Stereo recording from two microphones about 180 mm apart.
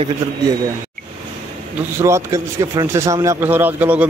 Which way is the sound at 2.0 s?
15° right (ahead or behind).